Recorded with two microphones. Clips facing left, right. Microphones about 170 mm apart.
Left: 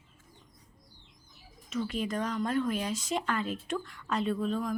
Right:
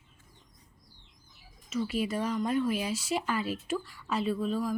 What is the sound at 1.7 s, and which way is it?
Speech, 5° right (ahead or behind).